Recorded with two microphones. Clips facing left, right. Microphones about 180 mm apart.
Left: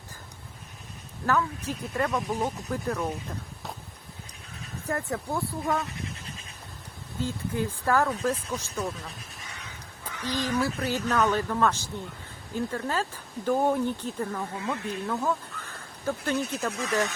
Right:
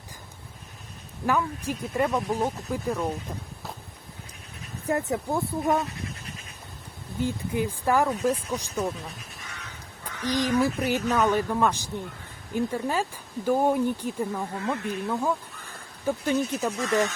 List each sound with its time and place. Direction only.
1.3 s speech: 15° right (ahead or behind)
4.9 s speech: 20° right (ahead or behind)
7.2 s speech: 15° right (ahead or behind)
10.2 s speech: 15° right (ahead or behind)